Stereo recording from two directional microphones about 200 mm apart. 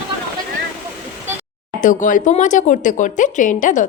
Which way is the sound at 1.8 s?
40° left (ahead or behind).